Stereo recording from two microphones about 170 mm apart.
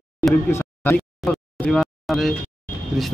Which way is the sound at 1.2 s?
Centre (ahead or behind).